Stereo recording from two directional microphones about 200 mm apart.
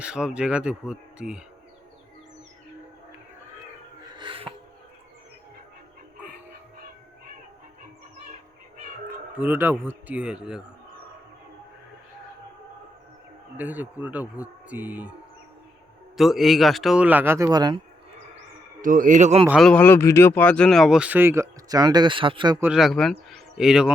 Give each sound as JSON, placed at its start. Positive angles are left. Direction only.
{"t": 0.0, "sound": "speech", "side_deg": -5}
{"t": 4.2, "sound": "music", "side_deg": -25}
{"t": 9.4, "sound": "speech", "side_deg": -10}
{"t": 13.6, "sound": "speech", "side_deg": -10}
{"t": 16.1, "sound": "speech", "side_deg": 0}
{"t": 18.8, "sound": "a man's voice", "side_deg": -40}
{"t": 19.5, "sound": "speech", "side_deg": 0}
{"t": 22.6, "sound": "speech", "side_deg": 0}